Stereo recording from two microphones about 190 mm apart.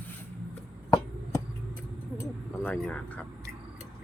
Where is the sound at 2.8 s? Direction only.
5° left (ahead or behind).